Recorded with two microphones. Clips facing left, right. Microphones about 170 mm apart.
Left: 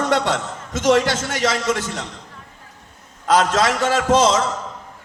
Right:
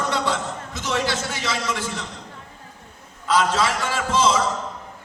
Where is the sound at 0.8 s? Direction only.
80° left.